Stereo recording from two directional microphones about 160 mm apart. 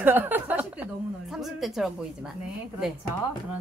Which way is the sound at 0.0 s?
10° right (ahead or behind).